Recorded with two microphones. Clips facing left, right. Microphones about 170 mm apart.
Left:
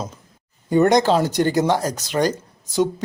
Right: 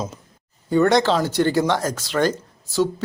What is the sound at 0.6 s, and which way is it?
Speech, 20° left (ahead or behind).